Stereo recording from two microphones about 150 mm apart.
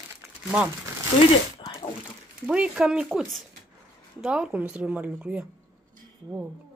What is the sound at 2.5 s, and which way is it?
A woman's voice, 5° right (ahead or behind).